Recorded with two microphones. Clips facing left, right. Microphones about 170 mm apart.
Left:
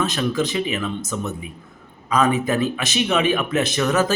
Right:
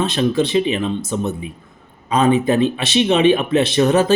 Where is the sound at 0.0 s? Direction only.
30° right (ahead or behind).